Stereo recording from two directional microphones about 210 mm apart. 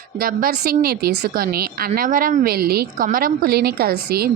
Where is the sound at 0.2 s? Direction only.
45° right (ahead or behind).